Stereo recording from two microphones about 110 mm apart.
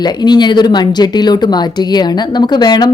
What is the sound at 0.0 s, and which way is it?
Speech, 40° left (ahead or behind).